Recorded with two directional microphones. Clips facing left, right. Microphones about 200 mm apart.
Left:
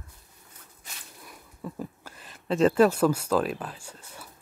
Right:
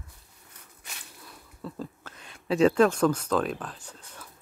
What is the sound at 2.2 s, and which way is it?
Speech, centre (ahead or behind).